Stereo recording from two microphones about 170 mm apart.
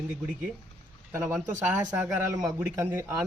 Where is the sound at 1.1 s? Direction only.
15° right (ahead or behind).